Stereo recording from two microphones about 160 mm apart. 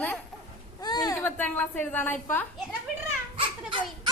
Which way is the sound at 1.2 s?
10° left (ahead or behind).